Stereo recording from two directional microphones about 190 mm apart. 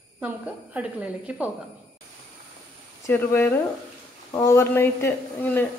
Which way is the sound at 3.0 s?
10° left (ahead or behind).